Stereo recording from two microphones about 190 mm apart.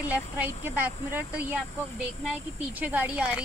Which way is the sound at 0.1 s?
10° right (ahead or behind).